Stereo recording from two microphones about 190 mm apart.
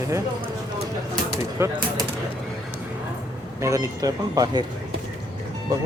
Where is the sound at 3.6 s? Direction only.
15° right (ahead or behind).